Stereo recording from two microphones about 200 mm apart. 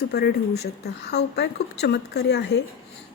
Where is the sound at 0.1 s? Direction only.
55° left (ahead or behind).